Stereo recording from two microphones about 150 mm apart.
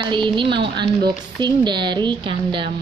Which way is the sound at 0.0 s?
35° right (ahead or behind).